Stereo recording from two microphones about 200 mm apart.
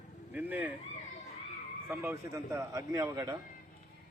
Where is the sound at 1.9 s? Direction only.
15° right (ahead or behind).